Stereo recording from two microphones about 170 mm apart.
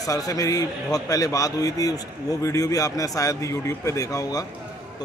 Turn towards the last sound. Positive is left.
turn(degrees=20)  # may be behind; listen again after turning